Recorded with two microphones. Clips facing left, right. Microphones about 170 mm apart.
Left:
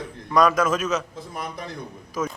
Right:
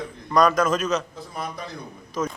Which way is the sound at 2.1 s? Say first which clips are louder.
Right 1 dB; 5° left (ahead or behind).